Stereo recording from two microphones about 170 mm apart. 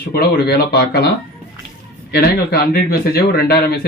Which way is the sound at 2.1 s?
70° left (ahead or behind).